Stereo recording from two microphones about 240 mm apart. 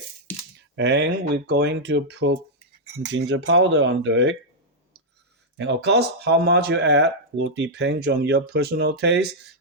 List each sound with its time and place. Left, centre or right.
0.8 s speech: right
5.5 s speech: right